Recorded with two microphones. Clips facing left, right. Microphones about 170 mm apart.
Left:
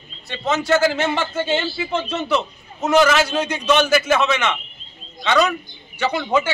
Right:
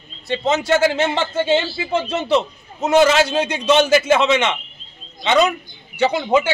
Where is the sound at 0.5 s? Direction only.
25° right (ahead or behind).